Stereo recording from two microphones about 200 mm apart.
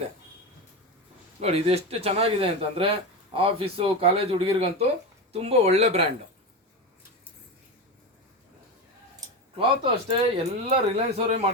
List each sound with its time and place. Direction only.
1.4 s speech: 30° right (ahead or behind)
9.6 s speech: 25° right (ahead or behind)